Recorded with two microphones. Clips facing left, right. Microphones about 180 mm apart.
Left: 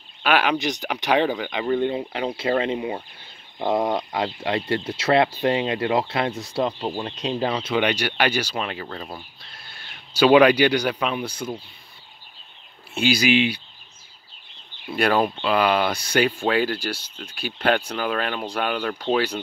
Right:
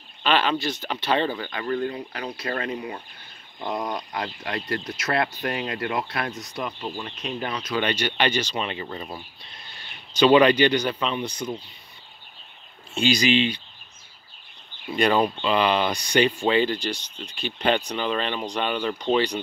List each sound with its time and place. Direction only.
0.2 s speech: 10° left (ahead or behind); by 7.8 s 30° left (ahead or behind)
7.8 s speech: 10° left (ahead or behind)
12.9 s speech: 5° left (ahead or behind)
14.9 s speech: 5° left (ahead or behind)